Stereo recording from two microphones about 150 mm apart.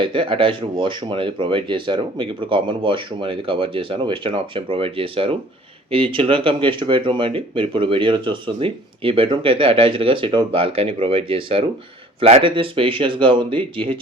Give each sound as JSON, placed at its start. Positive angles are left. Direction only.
{"t": 0.0, "sound": "speech", "side_deg": -35}